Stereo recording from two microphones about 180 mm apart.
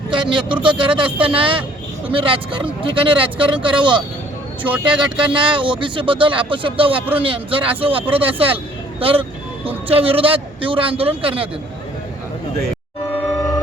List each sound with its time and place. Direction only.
0.1 s speech: 25° right (ahead or behind)
4.6 s speech: 10° right (ahead or behind)
5.2 s speech: 25° right (ahead or behind)